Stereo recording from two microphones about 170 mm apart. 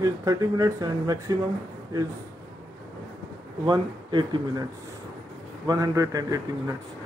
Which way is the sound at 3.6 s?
25° right (ahead or behind).